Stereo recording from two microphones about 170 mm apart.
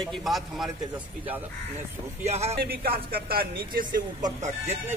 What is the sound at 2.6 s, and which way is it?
Speech, 65° right (ahead or behind).